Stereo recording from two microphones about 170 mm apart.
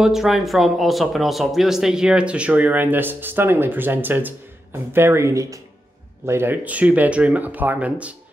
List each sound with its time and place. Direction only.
0.0 s speech: centre (ahead or behind)